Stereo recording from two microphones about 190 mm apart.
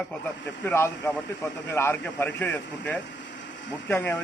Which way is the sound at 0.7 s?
10° left (ahead or behind).